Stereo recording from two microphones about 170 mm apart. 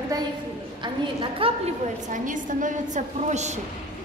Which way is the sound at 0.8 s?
30° right (ahead or behind).